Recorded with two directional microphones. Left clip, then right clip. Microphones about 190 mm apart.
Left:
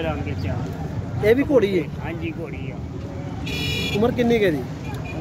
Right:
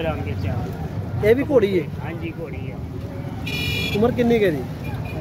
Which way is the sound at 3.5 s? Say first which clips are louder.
Right 1 dB; 50° right (ahead or behind).